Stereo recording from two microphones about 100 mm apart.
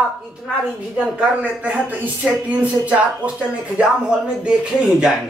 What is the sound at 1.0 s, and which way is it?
Speech, 10° right (ahead or behind).